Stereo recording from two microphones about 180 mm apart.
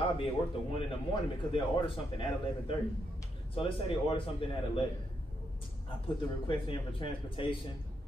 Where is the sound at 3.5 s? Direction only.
30° left (ahead or behind).